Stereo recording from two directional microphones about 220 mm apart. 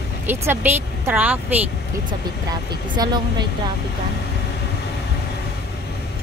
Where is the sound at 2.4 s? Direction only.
20° right (ahead or behind).